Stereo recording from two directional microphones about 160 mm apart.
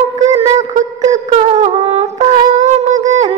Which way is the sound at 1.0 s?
45° right (ahead or behind).